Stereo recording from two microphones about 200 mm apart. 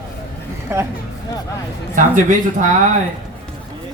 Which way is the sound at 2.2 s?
40° right (ahead or behind).